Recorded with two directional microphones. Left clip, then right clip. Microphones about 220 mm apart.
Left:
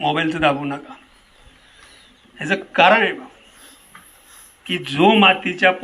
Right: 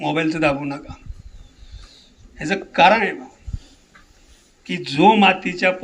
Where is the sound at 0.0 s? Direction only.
60° right (ahead or behind).